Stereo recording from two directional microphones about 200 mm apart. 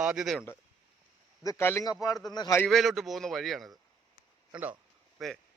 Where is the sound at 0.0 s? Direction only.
5° right (ahead or behind).